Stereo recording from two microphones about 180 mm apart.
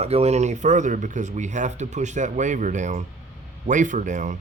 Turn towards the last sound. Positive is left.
turn(degrees=-45)  # may be behind; listen again after turning